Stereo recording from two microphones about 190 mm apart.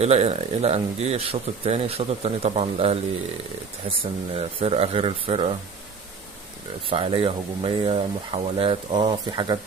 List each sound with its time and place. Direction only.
0.0 s speech: 35° right (ahead or behind)
4.0 s speech: 30° right (ahead or behind)
6.9 s speech: 30° right (ahead or behind)